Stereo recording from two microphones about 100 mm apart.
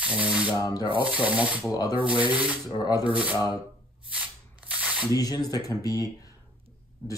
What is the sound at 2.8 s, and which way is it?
Speech, 40° left (ahead or behind).